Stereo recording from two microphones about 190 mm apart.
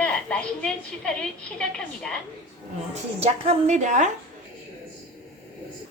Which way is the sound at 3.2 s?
35° right (ahead or behind).